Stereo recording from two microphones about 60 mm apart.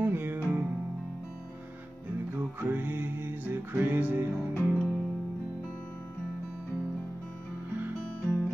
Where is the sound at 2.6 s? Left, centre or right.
Right.